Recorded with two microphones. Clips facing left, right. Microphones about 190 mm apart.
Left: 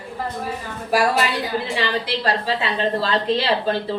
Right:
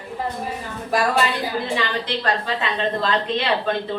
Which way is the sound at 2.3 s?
35° left (ahead or behind).